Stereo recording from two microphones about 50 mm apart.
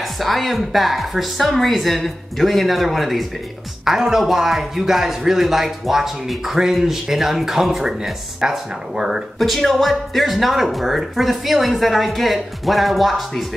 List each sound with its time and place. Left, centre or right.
0.0 s a man's voice: centre
9.4 s speech: centre